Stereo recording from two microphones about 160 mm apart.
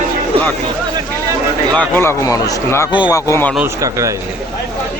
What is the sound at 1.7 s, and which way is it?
Speech, 10° left (ahead or behind).